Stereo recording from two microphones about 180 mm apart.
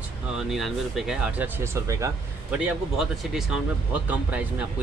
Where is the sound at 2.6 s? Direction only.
5° right (ahead or behind).